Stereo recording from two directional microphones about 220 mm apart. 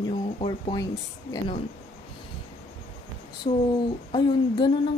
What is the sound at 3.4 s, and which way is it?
Speech, 35° left (ahead or behind).